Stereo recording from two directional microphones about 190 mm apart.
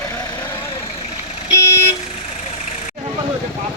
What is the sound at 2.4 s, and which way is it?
Vehicle, 35° left (ahead or behind).